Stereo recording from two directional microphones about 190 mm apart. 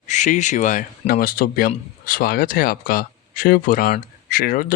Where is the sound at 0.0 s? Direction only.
40° left (ahead or behind).